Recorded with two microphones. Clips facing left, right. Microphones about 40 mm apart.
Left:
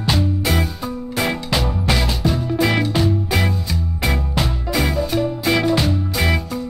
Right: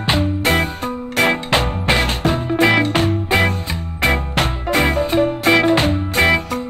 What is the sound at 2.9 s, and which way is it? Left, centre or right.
Music, right.